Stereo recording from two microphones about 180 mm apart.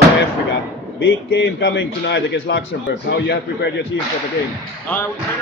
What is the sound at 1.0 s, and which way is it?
A man's voice, 75° left (ahead or behind).